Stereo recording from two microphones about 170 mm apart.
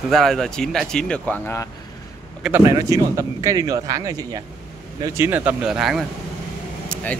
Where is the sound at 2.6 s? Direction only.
20° right (ahead or behind); by 6.0 s centre (ahead or behind).